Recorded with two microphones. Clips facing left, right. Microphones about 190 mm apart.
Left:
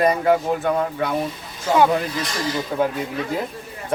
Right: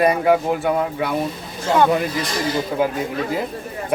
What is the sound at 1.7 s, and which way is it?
Speech, 10° left (ahead or behind).